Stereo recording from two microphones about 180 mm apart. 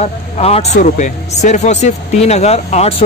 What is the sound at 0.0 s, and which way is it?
A man's voice, 35° left (ahead or behind).